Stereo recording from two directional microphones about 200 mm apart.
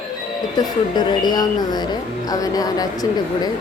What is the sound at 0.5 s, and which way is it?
A woman's voice, 20° left (ahead or behind).